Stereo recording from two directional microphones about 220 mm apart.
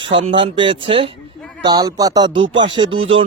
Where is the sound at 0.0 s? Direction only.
25° right (ahead or behind).